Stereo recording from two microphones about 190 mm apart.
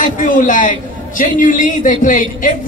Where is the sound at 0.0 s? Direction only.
45° left (ahead or behind).